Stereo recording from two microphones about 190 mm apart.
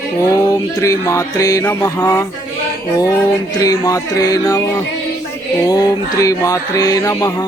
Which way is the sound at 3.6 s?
15° left (ahead or behind).